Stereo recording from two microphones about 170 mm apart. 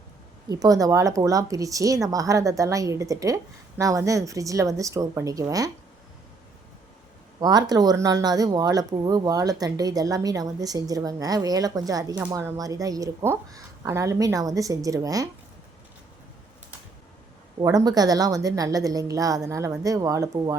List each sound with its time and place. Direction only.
0.4 s a woman's voice: 20° right (ahead or behind)
7.3 s a woman's voice: 25° right (ahead or behind)
17.6 s a woman's voice: 20° right (ahead or behind)